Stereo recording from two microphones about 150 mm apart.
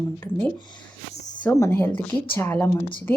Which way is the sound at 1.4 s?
15° left (ahead or behind).